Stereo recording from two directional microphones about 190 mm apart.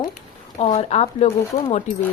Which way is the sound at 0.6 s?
35° left (ahead or behind).